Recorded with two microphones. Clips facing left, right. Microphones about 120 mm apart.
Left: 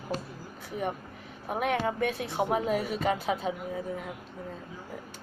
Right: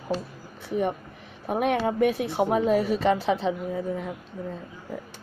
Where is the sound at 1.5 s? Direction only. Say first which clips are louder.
Right 5 dB; 20° right (ahead or behind).